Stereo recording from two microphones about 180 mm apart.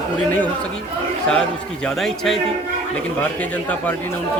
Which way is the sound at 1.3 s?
5° left (ahead or behind).